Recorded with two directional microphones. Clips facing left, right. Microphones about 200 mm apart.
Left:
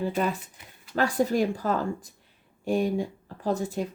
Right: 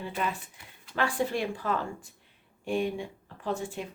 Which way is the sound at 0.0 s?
40° left (ahead or behind).